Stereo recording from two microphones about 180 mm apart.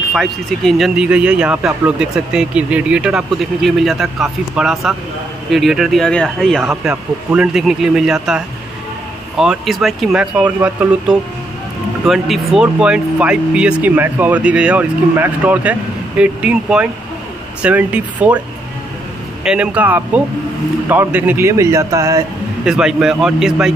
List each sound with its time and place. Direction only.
0.1 s speech: centre (ahead or behind)
9.4 s speech: centre (ahead or behind)
19.4 s speech: 5° right (ahead or behind)
22.7 s speech: 5° right (ahead or behind)